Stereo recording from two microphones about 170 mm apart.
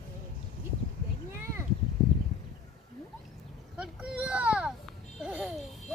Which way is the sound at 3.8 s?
5° right (ahead or behind).